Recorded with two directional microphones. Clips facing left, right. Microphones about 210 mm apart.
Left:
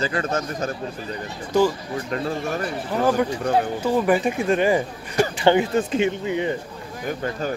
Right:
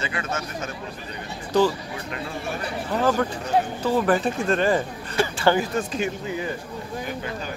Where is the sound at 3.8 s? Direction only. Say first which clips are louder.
Left 2 dB; 10° left (ahead or behind).